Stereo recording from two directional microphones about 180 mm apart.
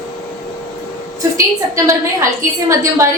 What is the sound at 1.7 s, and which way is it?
A woman's voice, 15° right (ahead or behind).